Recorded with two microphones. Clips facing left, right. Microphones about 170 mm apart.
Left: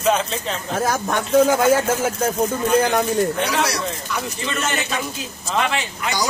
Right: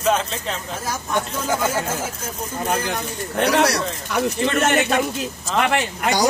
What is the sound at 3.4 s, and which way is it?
Speech, 60° right (ahead or behind).